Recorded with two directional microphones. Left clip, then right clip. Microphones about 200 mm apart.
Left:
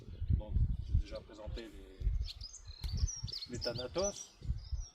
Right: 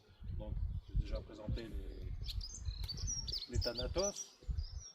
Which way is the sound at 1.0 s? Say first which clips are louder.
Even; 15° left (ahead or behind).